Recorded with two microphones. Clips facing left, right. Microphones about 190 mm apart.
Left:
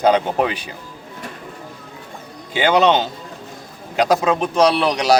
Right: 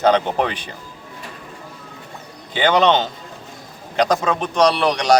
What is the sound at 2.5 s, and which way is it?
A man's voice, 10° left (ahead or behind).